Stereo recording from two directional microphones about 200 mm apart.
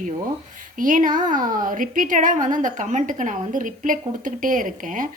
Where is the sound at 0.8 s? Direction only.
40° right (ahead or behind).